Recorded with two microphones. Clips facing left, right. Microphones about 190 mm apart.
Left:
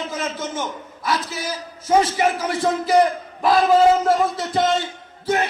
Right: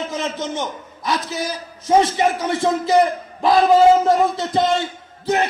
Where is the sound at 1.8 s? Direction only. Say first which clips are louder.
Right 2 dB; 25° right (ahead or behind).